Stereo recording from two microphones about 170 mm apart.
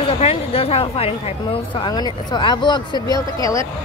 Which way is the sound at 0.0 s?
35° left (ahead or behind).